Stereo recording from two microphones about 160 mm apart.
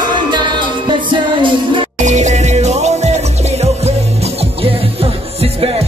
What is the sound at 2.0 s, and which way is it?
Music, 45° right (ahead or behind).